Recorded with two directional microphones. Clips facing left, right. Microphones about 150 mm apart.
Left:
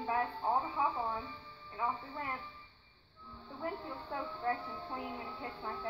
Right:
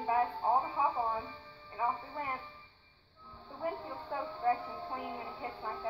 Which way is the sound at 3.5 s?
20° right (ahead or behind).